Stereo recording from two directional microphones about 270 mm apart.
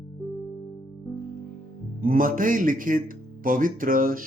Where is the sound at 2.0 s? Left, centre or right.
Right.